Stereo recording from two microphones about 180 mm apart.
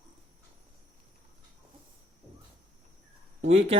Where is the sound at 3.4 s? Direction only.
35° right (ahead or behind).